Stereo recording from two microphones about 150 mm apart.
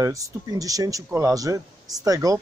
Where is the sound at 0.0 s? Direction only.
20° right (ahead or behind).